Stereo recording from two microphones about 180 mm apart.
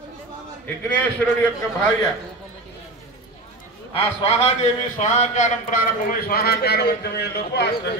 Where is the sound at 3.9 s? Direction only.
35° left (ahead or behind); by 7.9 s 65° left (ahead or behind).